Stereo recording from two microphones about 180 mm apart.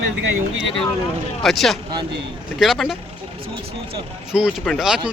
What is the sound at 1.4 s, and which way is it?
Speech, centre (ahead or behind).